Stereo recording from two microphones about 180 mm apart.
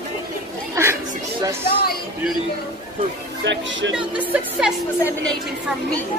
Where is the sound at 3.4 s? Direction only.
90° right.